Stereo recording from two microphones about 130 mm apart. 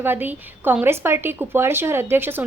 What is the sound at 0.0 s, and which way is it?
A woman's voice, 15° right (ahead or behind).